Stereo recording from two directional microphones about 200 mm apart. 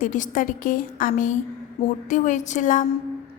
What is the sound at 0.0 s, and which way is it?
A woman's voice, 40° left (ahead or behind).